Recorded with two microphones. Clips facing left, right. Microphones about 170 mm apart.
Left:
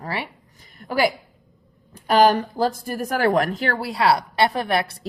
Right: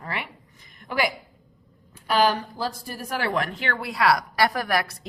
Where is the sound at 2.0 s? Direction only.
45° left (ahead or behind).